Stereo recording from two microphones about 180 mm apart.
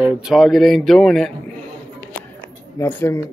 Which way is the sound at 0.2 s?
Centre (ahead or behind).